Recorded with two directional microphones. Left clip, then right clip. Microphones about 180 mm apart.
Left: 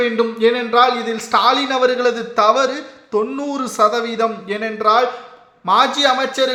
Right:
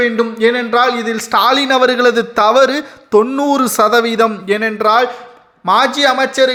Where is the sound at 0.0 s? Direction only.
30° right (ahead or behind).